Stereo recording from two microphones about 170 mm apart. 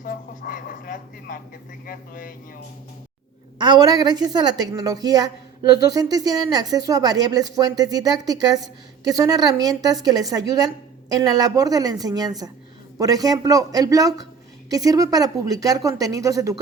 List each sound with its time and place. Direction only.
0.0 s a sound: 55° left (ahead or behind)
1.9 s speech: 55° left (ahead or behind)
3.6 s a woman's voice: 25° right (ahead or behind)